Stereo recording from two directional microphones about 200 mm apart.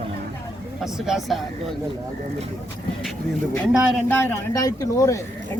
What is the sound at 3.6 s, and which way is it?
Speech, 10° left (ahead or behind).